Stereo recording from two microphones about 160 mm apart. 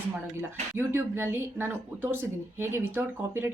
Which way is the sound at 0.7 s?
15° right (ahead or behind).